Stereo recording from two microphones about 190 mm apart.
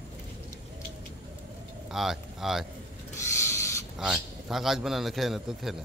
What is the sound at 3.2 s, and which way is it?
Owl, 15° left (ahead or behind).